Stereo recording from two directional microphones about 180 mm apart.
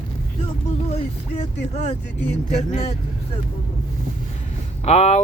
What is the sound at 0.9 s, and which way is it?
Speech, 35° left (ahead or behind).